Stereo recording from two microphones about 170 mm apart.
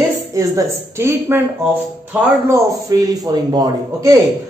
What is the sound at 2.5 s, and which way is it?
A man's voice, 20° right (ahead or behind).